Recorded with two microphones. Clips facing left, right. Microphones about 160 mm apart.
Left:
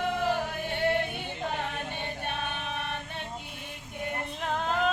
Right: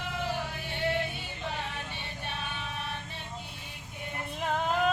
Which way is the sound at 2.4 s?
60° left (ahead or behind).